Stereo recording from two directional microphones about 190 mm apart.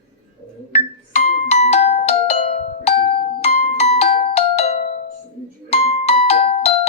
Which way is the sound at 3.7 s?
35° left (ahead or behind).